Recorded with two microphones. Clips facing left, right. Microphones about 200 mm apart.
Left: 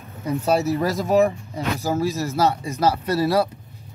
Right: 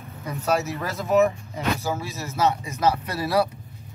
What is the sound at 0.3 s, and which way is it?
Speech, 30° left (ahead or behind).